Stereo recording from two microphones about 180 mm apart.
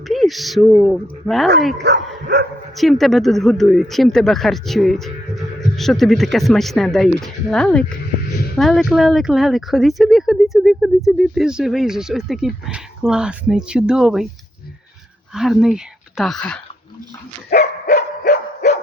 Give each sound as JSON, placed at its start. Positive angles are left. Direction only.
{"t": 0.1, "sound": "speech", "side_deg": 0}
{"t": 1.8, "sound": "speech", "side_deg": -65}
{"t": 2.7, "sound": "speech", "side_deg": 0}
{"t": 15.3, "sound": "speech", "side_deg": 0}
{"t": 17.8, "sound": "dog", "side_deg": 55}